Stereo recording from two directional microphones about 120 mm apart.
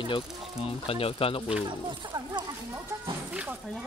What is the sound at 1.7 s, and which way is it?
Speech, 40° right (ahead or behind).